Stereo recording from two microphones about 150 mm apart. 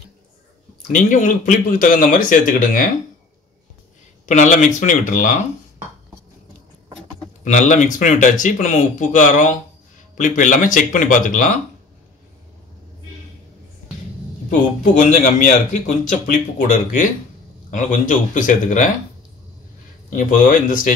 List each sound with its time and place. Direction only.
0.9 s speech: 60° left (ahead or behind)
4.3 s speech: 55° left (ahead or behind)
7.4 s speech: 55° left (ahead or behind)
14.8 s speech: 55° left (ahead or behind)
20.2 s speech: 65° left (ahead or behind)